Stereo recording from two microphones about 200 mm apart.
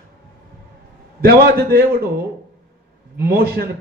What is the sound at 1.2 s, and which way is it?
Speech, 50° right (ahead or behind).